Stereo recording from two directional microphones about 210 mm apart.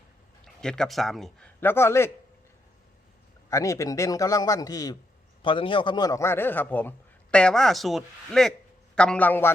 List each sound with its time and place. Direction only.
0.4 s a man's voice: 5° left (ahead or behind)
3.5 s a man's voice: 15° left (ahead or behind)